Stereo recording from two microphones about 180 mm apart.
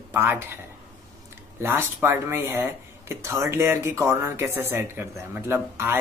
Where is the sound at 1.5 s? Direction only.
15° right (ahead or behind).